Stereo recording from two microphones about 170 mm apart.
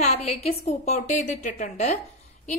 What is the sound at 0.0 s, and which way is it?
A woman's voice, 40° left (ahead or behind).